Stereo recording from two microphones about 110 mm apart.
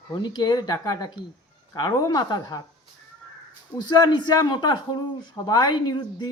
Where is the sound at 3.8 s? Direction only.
40° left (ahead or behind).